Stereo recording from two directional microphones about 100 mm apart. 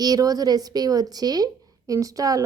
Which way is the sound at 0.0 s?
40° right (ahead or behind).